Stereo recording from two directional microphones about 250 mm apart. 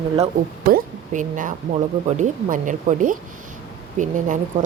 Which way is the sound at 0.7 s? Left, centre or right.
Right.